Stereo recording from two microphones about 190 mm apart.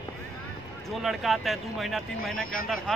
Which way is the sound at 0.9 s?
Centre (ahead or behind).